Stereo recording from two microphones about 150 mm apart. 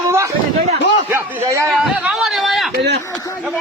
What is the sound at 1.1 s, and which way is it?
Speech, 15° right (ahead or behind).